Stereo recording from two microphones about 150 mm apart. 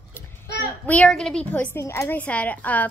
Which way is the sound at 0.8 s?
10° left (ahead or behind).